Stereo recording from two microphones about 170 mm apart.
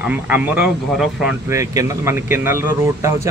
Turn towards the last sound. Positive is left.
turn(degrees=-15)  # may be behind; listen again after turning